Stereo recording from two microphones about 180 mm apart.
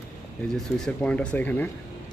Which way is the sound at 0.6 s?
5° left (ahead or behind).